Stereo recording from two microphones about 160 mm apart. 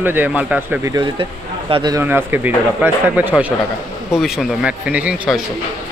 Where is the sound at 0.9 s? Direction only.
35° right (ahead or behind).